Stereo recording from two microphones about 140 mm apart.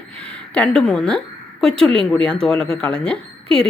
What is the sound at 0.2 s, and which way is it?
A woman's voice, 10° left (ahead or behind).